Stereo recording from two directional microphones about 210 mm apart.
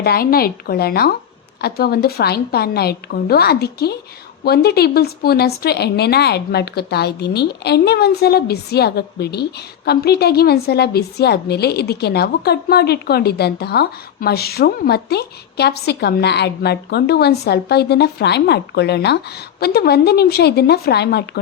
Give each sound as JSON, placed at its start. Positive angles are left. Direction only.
{"t": 0.0, "sound": "speech", "side_deg": 45}